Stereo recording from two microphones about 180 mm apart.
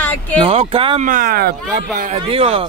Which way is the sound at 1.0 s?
50° right (ahead or behind).